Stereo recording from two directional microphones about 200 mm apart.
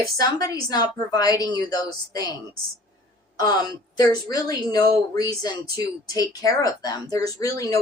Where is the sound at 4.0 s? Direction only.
20° left (ahead or behind).